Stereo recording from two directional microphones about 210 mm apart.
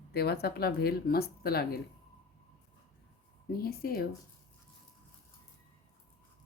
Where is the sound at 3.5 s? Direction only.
45° left (ahead or behind).